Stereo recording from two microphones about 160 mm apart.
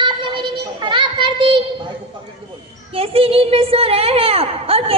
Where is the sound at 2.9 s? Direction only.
35° right (ahead or behind).